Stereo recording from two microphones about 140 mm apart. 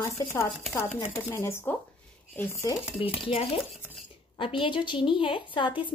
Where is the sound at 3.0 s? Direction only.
40° left (ahead or behind).